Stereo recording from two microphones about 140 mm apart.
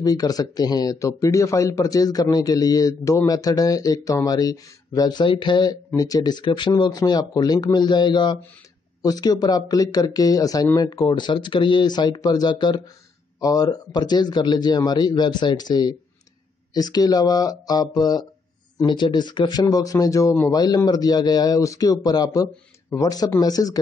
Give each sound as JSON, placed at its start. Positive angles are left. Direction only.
{"t": 0.0, "sound": "speech", "side_deg": 30}